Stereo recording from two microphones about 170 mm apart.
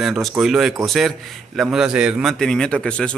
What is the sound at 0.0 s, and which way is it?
A man's voice, centre (ahead or behind).